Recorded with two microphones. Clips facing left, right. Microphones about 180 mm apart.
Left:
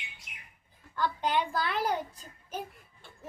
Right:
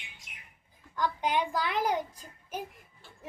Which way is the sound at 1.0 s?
15° right (ahead or behind).